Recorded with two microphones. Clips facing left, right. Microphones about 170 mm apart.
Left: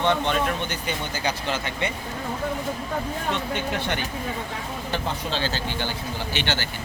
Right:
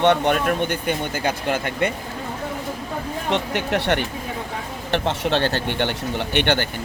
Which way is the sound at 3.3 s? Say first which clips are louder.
Right 7 dB; 75° right (ahead or behind).